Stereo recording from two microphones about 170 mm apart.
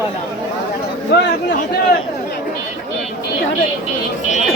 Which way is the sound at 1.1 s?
70° left (ahead or behind).